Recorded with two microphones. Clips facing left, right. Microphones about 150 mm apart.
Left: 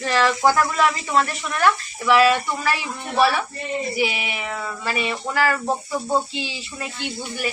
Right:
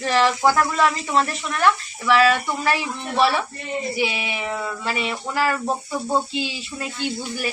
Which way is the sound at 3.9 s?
30° right (ahead or behind).